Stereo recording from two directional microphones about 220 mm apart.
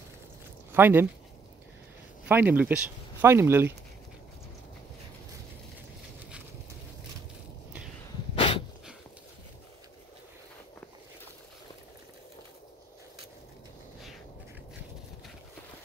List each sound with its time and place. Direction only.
0.7 s speech: 10° right (ahead or behind)
2.2 s speech: 10° right (ahead or behind)
8.4 s dog: 25° left (ahead or behind)